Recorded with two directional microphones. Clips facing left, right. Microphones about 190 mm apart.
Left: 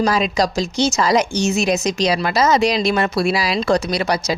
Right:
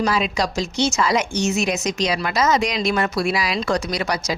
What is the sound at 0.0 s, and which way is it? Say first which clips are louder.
Speech: left 4 dB; 40° left (ahead or behind).